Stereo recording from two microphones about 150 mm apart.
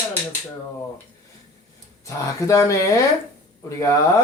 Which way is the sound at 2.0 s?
20° left (ahead or behind).